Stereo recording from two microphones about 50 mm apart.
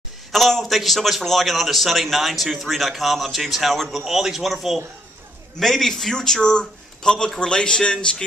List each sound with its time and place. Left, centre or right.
0.3 s a man's voice: centre